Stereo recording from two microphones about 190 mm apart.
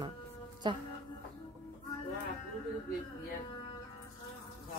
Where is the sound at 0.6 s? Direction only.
25° right (ahead or behind).